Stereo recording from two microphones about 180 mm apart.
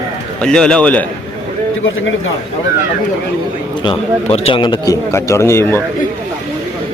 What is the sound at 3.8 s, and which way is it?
A man's voice, 30° left (ahead or behind).